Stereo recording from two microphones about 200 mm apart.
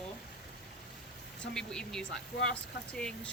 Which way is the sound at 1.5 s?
5° left (ahead or behind).